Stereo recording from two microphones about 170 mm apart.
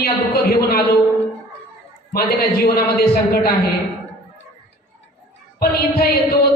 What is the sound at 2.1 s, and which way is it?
Speech, 65° left (ahead or behind).